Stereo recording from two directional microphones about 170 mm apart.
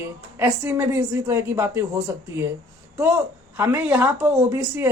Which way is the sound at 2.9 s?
15° right (ahead or behind).